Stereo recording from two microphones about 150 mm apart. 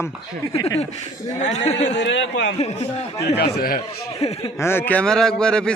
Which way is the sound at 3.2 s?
90° left.